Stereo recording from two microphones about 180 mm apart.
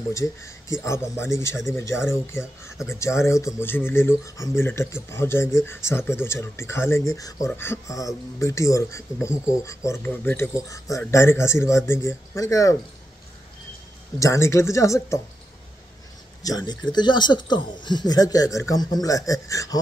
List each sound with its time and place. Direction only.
0.1 s speech: 15° left (ahead or behind)
14.2 s speech: 15° left (ahead or behind)
16.4 s speech: 20° left (ahead or behind)